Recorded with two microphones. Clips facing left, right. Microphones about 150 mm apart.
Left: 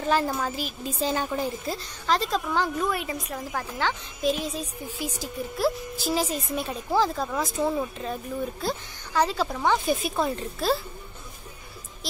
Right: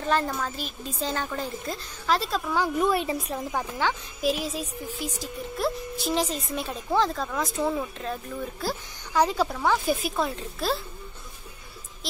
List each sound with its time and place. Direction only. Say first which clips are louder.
0.1 s speech: left 1 dB; 10° left (ahead or behind)
1.7 s a woman's voice: right 3 dB; 5° right (ahead or behind)
2.8 s a woman's voice: right 4 dB; 25° right (ahead or behind)
3.5 s a woman's voice: even; 10° right (ahead or behind)